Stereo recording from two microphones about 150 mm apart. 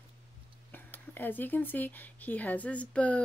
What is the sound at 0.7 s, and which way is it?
Speech, 15° left (ahead or behind).